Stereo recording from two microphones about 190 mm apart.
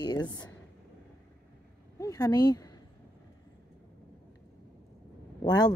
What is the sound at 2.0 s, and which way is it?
Speech, 20° left (ahead or behind).